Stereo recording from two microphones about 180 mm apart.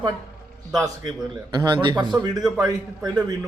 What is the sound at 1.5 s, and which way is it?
Speech, 25° right (ahead or behind).